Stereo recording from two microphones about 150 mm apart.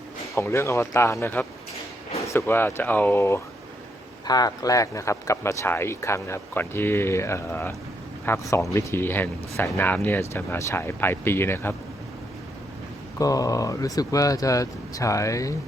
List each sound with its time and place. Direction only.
0.3 s speech: 20° left (ahead or behind)
13.1 s speech: 25° left (ahead or behind)